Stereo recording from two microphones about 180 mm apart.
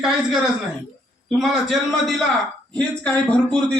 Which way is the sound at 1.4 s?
Centre (ahead or behind).